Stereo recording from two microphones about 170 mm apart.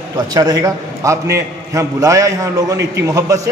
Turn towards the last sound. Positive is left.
turn(degrees=-20)  # may be behind; listen again after turning